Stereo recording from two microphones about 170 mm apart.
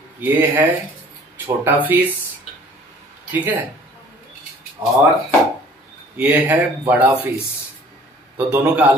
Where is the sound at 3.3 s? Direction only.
10° right (ahead or behind).